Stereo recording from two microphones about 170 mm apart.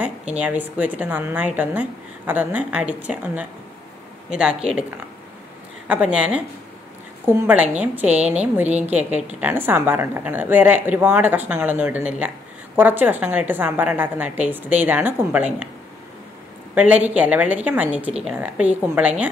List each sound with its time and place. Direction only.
0.4 s a woman's voice: 10° right (ahead or behind)
5.9 s a woman's voice: 5° right (ahead or behind)
16.7 s a woman's voice: 10° right (ahead or behind)